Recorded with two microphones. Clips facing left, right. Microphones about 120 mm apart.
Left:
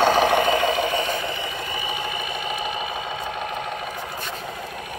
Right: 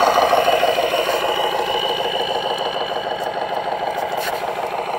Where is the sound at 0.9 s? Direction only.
60° right (ahead or behind); by 1.7 s 90° right.